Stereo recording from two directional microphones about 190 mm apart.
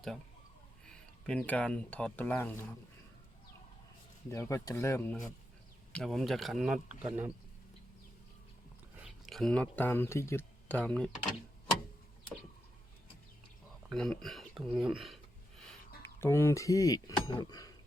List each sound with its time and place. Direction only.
1.3 s speech: 5° left (ahead or behind)
4.3 s speech: 15° left (ahead or behind); by 7.3 s 5° right (ahead or behind)
9.0 s speech: centre (ahead or behind)
13.9 s speech: 5° left (ahead or behind)
16.0 s speech: 10° left (ahead or behind)